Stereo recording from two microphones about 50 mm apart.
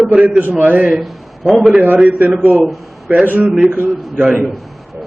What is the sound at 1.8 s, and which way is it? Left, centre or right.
Speech, right.